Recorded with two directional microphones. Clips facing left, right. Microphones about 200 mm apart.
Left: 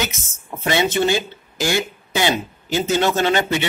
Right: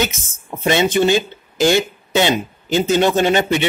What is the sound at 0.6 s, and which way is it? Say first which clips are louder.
A man's voice: right 3 dB; 15° right (ahead or behind).